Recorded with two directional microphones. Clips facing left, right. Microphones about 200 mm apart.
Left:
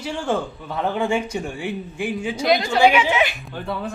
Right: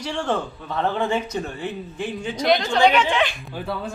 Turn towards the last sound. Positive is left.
turn(degrees=0)  # may be behind; listen again after turning